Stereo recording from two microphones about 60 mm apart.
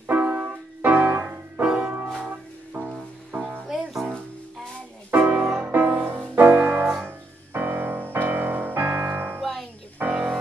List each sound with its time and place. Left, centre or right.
0.0 s music: right
1.6 s music: centre
3.6 s music: centre
5.1 s music: right
5.7 s music: right
7.1 s music: right
9.4 s music: centre
10.1 s music: centre